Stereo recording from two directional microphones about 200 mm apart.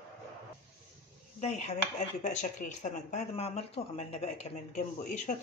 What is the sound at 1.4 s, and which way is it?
Speech, 35° left (ahead or behind).